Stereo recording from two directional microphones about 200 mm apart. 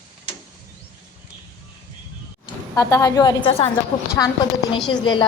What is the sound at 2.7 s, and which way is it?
Speech, 20° left (ahead or behind).